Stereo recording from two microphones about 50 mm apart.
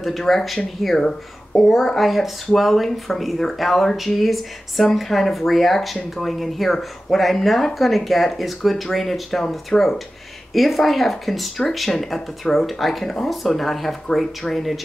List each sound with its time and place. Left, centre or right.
0.0 s speech: centre